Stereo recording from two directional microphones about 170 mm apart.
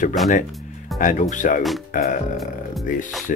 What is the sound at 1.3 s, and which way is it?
Speech, 50° left (ahead or behind).